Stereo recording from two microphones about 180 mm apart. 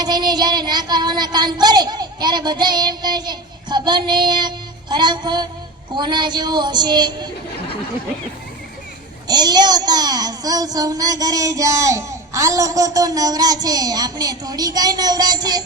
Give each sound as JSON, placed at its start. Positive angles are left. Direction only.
{"t": 0.0, "sound": "a child's voice", "side_deg": -25}
{"t": 9.2, "sound": "a child's voice", "side_deg": -25}